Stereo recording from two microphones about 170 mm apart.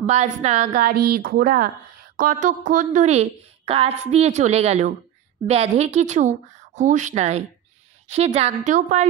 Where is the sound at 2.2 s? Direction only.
50° right (ahead or behind).